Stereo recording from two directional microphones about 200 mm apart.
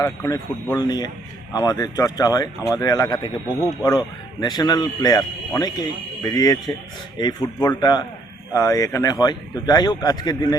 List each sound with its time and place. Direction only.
0.0 s speech: 15° left (ahead or behind)